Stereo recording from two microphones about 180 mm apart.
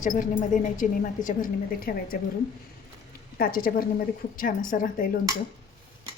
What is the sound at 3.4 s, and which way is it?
A woman's voice, 55° left (ahead or behind).